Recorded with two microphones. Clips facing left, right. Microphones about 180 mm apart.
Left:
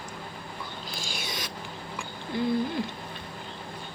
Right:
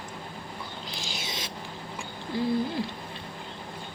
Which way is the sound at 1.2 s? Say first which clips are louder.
Left 1 dB; 25° right (ahead or behind).